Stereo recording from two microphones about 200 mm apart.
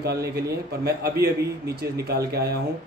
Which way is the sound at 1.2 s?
50° right (ahead or behind).